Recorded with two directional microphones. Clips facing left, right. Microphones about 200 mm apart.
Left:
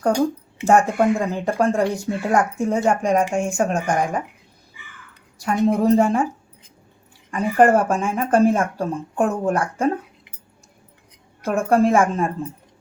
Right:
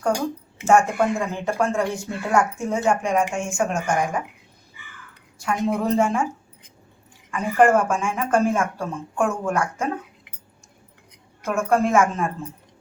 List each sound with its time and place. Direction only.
0.6 s speech: 35° left (ahead or behind)
5.4 s speech: 35° left (ahead or behind)
7.3 s speech: 35° left (ahead or behind)
11.4 s speech: 35° left (ahead or behind)